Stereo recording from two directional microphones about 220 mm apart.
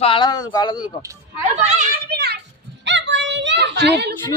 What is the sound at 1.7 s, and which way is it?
Children playing, 45° right (ahead or behind).